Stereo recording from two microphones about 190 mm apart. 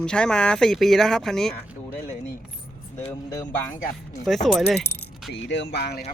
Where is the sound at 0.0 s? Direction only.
5° left (ahead or behind).